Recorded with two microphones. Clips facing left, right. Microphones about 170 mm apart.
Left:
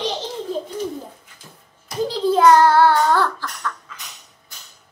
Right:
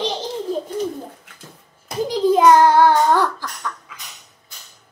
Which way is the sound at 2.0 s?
15° right (ahead or behind).